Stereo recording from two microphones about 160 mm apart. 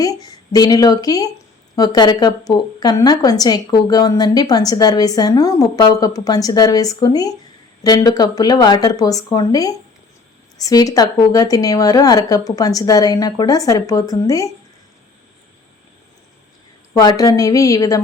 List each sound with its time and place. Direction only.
0.0 s a woman's voice: 25° left (ahead or behind)
16.9 s a woman's voice: 25° left (ahead or behind)